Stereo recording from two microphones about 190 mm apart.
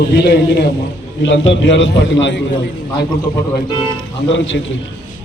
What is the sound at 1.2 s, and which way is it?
A man's voice, 75° left (ahead or behind).